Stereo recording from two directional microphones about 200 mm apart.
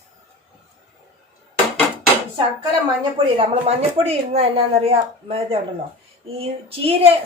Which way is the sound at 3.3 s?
30° right (ahead or behind).